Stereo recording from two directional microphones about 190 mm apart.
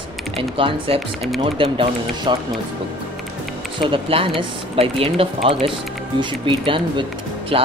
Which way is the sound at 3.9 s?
30° right (ahead or behind).